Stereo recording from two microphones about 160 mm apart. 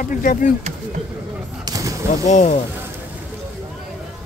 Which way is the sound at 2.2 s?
50° left (ahead or behind).